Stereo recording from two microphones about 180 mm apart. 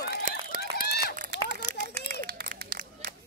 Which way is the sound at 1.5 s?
55° right (ahead or behind).